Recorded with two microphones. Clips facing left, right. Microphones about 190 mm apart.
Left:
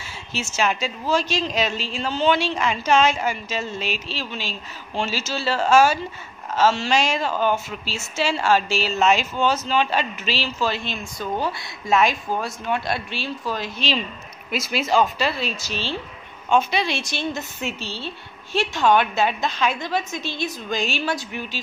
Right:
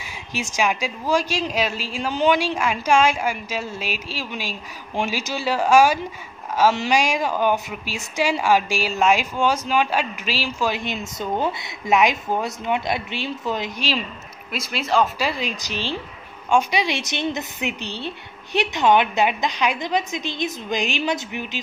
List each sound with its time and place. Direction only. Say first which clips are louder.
0.0 s a woman's voice: right 1 dB; 15° right (ahead or behind)
14.5 s speech: left 1 dB; centre (ahead or behind)
15.1 s a woman's voice: even; 15° right (ahead or behind)